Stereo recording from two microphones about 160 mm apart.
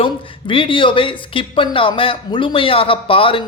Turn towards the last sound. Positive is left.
turn(degrees=35)  # may be behind; listen again after turning